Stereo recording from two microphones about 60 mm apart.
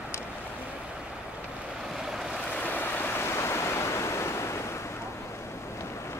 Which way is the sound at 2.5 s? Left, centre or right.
Left.